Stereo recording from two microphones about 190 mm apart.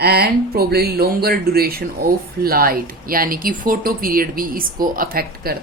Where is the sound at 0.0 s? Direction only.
55° right (ahead or behind).